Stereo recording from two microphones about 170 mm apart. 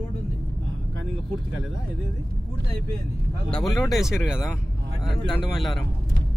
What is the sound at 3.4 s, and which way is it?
Speech, 5° left (ahead or behind).